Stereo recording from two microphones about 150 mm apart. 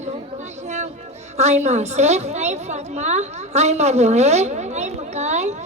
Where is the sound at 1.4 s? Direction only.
50° right (ahead or behind).